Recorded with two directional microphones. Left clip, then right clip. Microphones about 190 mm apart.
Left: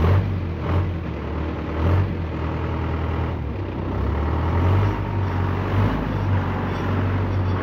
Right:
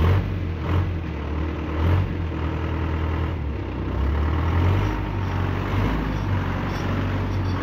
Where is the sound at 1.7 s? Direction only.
25° right (ahead or behind).